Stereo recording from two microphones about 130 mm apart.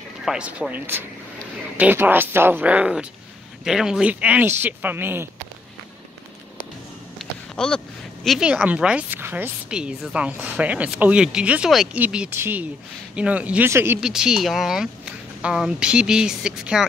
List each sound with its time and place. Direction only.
0.2 s speech: 5° right (ahead or behind)
7.2 s speech: 5° left (ahead or behind); by 13.9 s 20° right (ahead or behind)
14.0 s speech: 5° right (ahead or behind)